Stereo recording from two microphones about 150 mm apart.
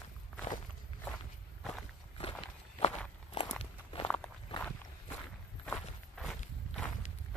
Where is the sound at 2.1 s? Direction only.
40° left (ahead or behind).